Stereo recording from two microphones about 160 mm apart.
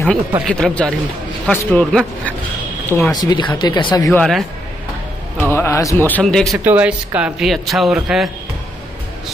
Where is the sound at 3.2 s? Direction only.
25° left (ahead or behind).